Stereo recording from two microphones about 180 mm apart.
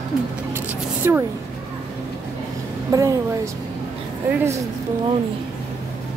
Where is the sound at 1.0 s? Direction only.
15° right (ahead or behind).